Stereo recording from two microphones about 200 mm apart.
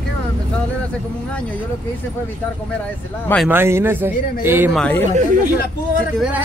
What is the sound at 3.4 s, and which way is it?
A man's voice, 10° right (ahead or behind).